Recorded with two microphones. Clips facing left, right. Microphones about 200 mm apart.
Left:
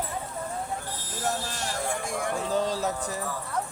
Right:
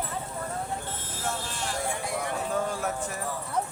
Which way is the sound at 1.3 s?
45° left (ahead or behind).